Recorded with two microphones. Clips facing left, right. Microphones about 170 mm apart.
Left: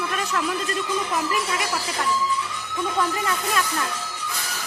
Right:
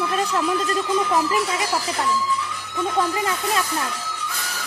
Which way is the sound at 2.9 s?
30° right (ahead or behind).